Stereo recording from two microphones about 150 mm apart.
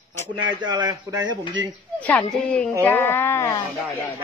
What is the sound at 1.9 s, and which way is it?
Speech, 10° left (ahead or behind).